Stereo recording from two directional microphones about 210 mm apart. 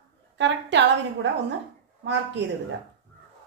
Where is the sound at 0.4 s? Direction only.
55° right (ahead or behind).